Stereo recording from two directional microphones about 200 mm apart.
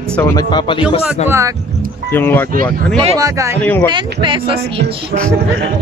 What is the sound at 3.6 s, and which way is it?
Speech, 10° left (ahead or behind).